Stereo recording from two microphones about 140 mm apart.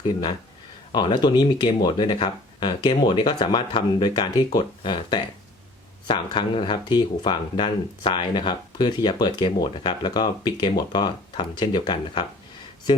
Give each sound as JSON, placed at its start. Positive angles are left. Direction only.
{"t": 0.0, "sound": "speech", "side_deg": 30}